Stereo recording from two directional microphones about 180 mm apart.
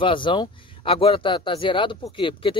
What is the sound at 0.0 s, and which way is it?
Speech, 30° left (ahead or behind).